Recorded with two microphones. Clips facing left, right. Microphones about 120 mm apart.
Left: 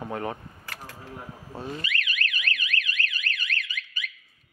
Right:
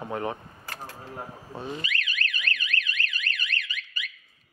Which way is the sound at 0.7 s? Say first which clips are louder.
Right 2 dB; 35° right (ahead or behind).